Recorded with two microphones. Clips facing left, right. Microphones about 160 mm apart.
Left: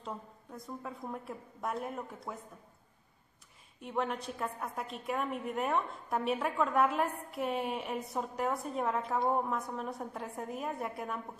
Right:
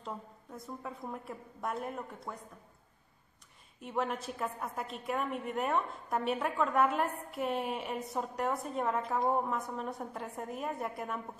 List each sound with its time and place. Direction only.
0.0 s a woman's voice: centre (ahead or behind)
3.8 s a woman's voice: centre (ahead or behind)